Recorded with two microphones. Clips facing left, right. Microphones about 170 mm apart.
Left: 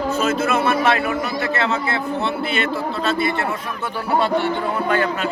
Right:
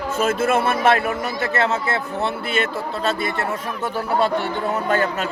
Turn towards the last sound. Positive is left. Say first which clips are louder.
# left 1 dB
turn(degrees=-40)  # may be behind; listen again after turning